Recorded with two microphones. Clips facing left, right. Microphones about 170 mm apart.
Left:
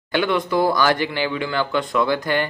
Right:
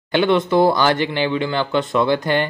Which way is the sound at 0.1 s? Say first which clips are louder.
Right 4 dB; 25° right (ahead or behind).